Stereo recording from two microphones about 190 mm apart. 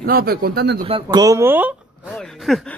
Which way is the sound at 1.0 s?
15° right (ahead or behind).